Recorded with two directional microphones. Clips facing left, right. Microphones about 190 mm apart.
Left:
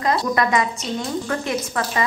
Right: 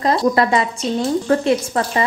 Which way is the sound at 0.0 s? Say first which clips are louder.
Right 4 dB; 30° right (ahead or behind).